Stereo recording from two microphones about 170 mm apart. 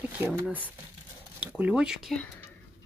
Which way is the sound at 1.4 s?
10° right (ahead or behind).